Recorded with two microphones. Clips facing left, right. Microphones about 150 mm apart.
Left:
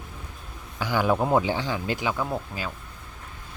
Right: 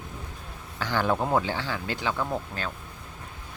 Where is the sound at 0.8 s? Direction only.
10° left (ahead or behind).